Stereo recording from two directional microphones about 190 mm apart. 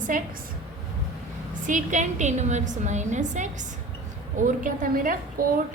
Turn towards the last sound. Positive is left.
turn(degrees=-45)  # may be behind; listen again after turning